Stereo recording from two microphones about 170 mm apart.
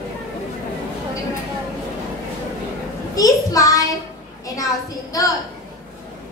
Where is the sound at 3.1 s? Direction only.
20° left (ahead or behind).